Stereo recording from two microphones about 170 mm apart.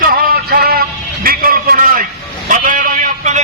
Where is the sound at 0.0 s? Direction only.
60° right (ahead or behind).